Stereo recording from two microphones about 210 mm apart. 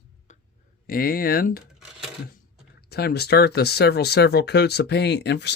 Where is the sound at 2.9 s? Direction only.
50° left (ahead or behind).